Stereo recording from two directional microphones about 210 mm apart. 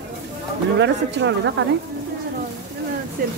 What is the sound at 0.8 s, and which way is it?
Speech, 55° right (ahead or behind).